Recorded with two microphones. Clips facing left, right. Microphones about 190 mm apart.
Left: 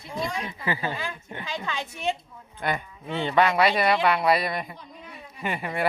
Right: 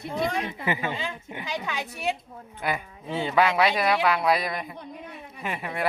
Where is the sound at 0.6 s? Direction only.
20° right (ahead or behind).